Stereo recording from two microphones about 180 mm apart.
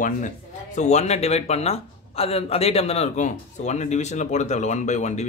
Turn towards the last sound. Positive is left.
turn(degrees=40)  # may be behind; listen again after turning